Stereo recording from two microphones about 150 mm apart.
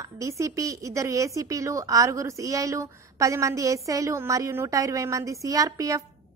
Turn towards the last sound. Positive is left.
turn(degrees=-20)  # may be behind; listen again after turning